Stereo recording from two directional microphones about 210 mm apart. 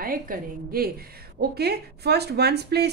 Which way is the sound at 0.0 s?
45° right (ahead or behind).